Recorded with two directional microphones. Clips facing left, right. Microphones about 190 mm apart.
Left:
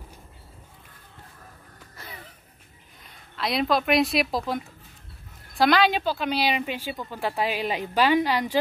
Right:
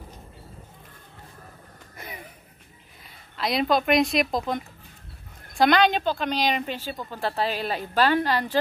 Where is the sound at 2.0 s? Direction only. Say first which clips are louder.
Right 3 dB; 15° right (ahead or behind).